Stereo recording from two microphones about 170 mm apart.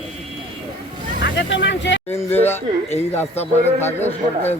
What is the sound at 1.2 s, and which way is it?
Speech, 90° left.